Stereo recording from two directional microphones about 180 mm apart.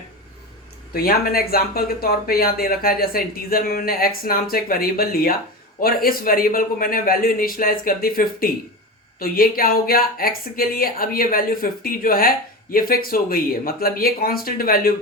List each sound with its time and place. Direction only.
0.9 s speech: 55° left (ahead or behind)